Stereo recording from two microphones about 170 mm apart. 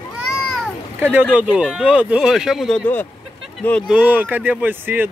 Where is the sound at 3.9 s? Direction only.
10° right (ahead or behind).